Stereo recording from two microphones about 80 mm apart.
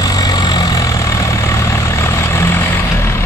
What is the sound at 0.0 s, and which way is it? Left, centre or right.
Vehicle, left.